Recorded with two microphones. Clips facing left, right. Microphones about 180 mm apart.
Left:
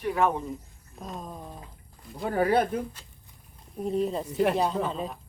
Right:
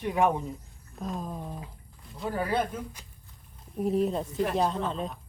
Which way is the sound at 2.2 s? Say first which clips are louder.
Left 5 dB; 60° left (ahead or behind).